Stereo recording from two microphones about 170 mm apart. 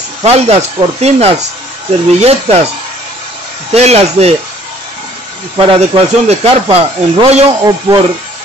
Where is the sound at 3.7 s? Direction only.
40° right (ahead or behind).